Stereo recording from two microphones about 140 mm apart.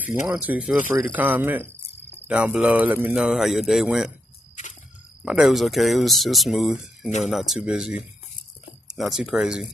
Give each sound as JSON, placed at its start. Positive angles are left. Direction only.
{"t": 0.3, "sound": "speech", "side_deg": -10}
{"t": 5.2, "sound": "speech", "side_deg": -5}